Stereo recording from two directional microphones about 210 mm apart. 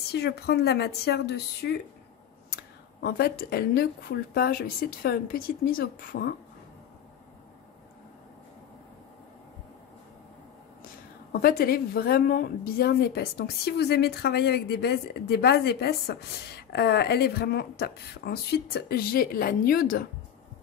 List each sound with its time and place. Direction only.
0.1 s a woman's voice: 50° left (ahead or behind)
11.3 s a woman's voice: 45° left (ahead or behind)